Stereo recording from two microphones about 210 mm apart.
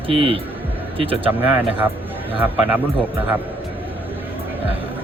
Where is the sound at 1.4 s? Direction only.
10° right (ahead or behind).